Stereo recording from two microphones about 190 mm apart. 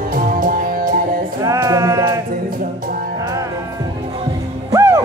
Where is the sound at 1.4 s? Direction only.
15° right (ahead or behind).